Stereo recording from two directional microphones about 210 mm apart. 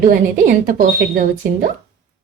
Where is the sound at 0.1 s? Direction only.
40° right (ahead or behind).